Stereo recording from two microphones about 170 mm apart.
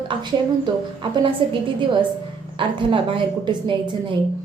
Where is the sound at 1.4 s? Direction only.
30° right (ahead or behind).